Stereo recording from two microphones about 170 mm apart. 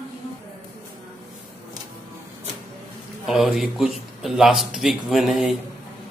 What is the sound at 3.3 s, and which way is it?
Speech, centre (ahead or behind).